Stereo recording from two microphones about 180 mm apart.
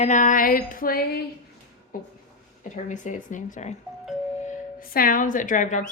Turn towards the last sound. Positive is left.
turn(degrees=45)  # may be behind; listen again after turning